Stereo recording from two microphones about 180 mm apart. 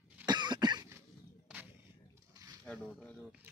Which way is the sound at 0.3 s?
25° right (ahead or behind).